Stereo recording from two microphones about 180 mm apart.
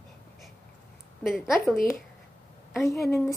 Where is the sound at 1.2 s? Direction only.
Centre (ahead or behind).